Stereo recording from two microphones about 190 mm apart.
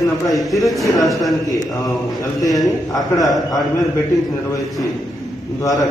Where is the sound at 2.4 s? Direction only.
20° left (ahead or behind).